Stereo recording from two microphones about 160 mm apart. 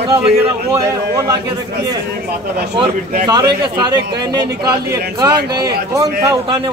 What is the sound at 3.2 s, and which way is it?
A man's voice, 25° right (ahead or behind).